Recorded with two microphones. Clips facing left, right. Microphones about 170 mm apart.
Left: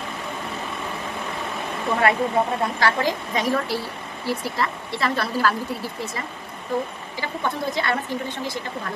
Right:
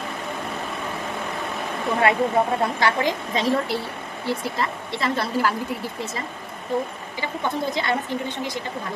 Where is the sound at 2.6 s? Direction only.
20° right (ahead or behind).